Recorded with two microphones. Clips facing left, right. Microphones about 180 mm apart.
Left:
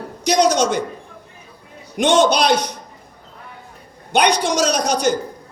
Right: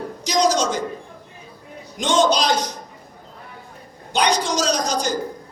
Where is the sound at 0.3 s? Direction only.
65° left (ahead or behind).